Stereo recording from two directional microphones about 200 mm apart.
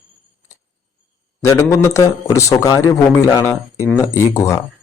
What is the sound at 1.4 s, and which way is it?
Speech, 15° left (ahead or behind).